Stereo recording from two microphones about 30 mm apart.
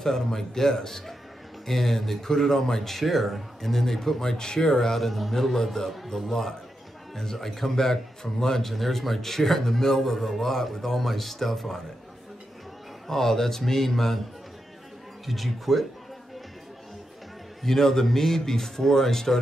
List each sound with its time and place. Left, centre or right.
0.0 s a man's voice: centre
4.4 s speech: left
4.9 s a man's voice: centre
7.2 s a man's voice: centre
13.1 s a man's voice: centre
15.2 s speech: centre
17.6 s a man's voice: centre